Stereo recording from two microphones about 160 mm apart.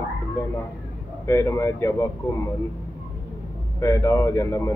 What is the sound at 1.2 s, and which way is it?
A man's voice, 20° left (ahead or behind).